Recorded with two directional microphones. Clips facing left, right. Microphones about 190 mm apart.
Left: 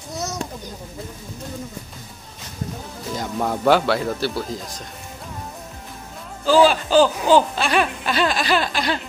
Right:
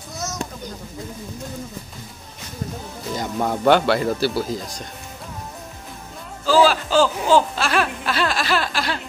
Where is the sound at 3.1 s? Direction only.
Centre (ahead or behind).